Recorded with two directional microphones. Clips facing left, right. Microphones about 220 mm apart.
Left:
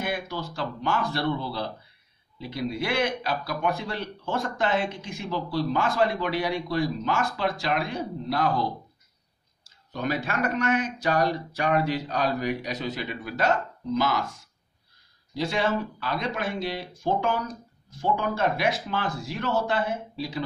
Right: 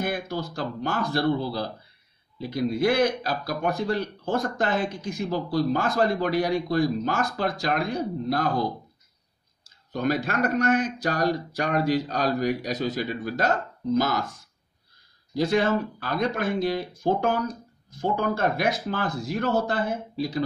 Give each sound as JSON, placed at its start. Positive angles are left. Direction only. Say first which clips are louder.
{"t": 0.0, "sound": "speech", "louder": "right 2 dB", "side_deg": -40}
{"t": 9.9, "sound": "speech", "louder": "right 3 dB", "side_deg": -40}
{"t": 15.3, "sound": "speech", "louder": "right 4 dB", "side_deg": -45}